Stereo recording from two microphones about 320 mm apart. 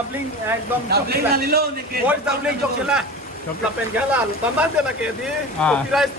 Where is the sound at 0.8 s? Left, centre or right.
Right.